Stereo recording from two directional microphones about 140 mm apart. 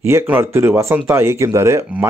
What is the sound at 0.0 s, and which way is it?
Speech, 15° right (ahead or behind).